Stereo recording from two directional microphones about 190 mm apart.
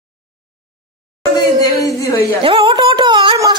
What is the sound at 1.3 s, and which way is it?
Speech, 20° left (ahead or behind).